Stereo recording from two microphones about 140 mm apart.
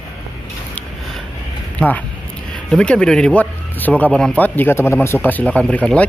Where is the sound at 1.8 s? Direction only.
10° left (ahead or behind).